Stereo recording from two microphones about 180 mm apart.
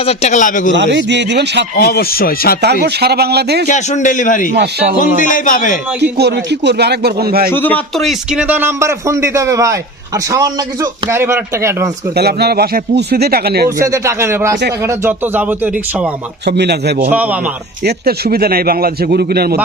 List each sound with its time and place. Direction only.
0.0 s a man's voice: 35° left (ahead or behind)
0.8 s speech: 75° right (ahead or behind)
1.7 s speech: 55° left (ahead or behind)
2.8 s speech: 65° right (ahead or behind)
3.7 s a man's voice: 40° left (ahead or behind)
4.5 s speech: 65° right (ahead or behind)
4.9 s a man's voice: 45° left (ahead or behind)
6.0 s speech: 65° right (ahead or behind)
7.5 s a man's voice: 10° left (ahead or behind); by 11.9 s 15° right (ahead or behind)
12.1 s speech: 65° right (ahead or behind)
13.7 s a man's voice: 15° right (ahead or behind)
16.5 s speech: 65° right (ahead or behind)
17.1 s a man's voice: 10° right (ahead or behind)
17.8 s speech: 55° right (ahead or behind)